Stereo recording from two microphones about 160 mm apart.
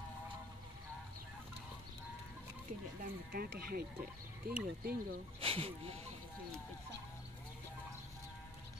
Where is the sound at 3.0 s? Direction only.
65° right (ahead or behind).